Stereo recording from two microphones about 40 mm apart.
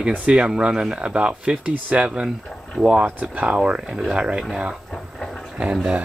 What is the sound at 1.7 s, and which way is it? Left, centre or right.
Speech, right.